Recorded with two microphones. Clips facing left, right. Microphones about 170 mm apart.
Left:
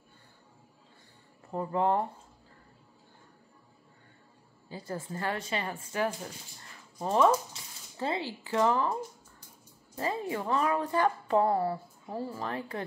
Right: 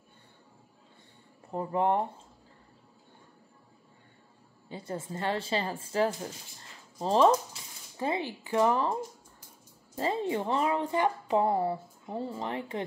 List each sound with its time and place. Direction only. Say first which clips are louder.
1.5 s a woman's voice: even; 20° right (ahead or behind)
4.6 s a woman's voice: right 1 dB; 25° right (ahead or behind)
8.0 s speech: right 1 dB; 15° right (ahead or behind)
9.9 s a woman's voice: right 3 dB; 25° right (ahead or behind)